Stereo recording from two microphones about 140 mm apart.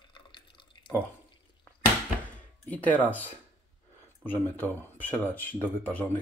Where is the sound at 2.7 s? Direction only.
10° left (ahead or behind).